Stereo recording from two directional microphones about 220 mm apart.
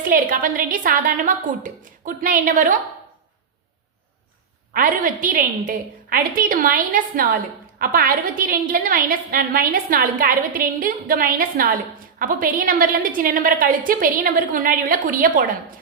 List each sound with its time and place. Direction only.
0.0 s a woman's voice: 40° right (ahead or behind)
4.7 s a woman's voice: 40° right (ahead or behind)